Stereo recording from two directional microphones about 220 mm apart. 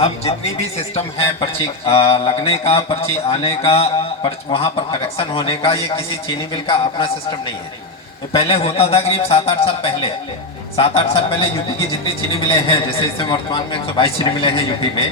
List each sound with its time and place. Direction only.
0.8 s a man's voice: 25° left (ahead or behind)